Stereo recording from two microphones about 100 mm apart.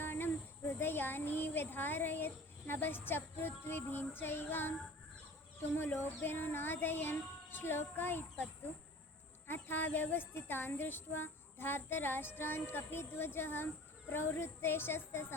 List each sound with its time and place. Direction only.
0.0 s a sound: 20° left (ahead or behind)
0.7 s speech: 20° left (ahead or behind)
5.7 s speech: 20° left (ahead or behind)
9.5 s speech: 20° left (ahead or behind)